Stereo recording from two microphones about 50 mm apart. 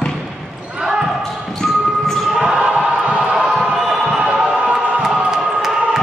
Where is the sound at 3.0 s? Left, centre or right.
Right.